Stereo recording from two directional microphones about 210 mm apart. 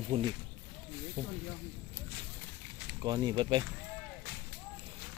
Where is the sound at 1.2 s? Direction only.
40° right (ahead or behind).